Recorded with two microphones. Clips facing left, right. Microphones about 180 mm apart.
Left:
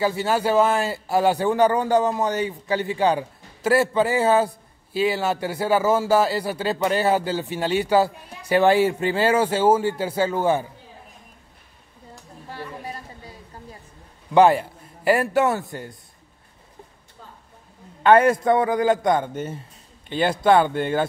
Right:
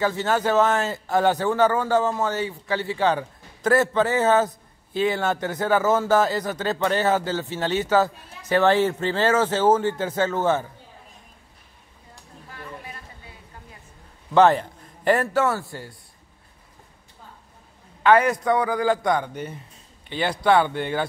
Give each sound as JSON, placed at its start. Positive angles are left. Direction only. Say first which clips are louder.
{"t": 0.0, "sound": "a man's voice", "louder": "left 1 dB", "side_deg": 10}
{"t": 12.4, "sound": "a sound", "louder": "left 5 dB", "side_deg": 35}
{"t": 14.3, "sound": "a man's voice", "louder": "left 1 dB", "side_deg": 10}
{"t": 18.1, "sound": "a man's voice", "louder": "left 3 dB", "side_deg": 25}